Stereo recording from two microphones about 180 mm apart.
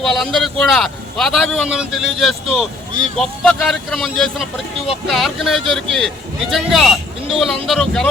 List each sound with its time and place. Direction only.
0.0 s a man's voice: centre (ahead or behind)